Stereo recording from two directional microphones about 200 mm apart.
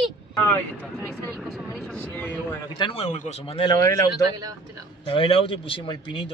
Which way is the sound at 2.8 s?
30° left (ahead or behind).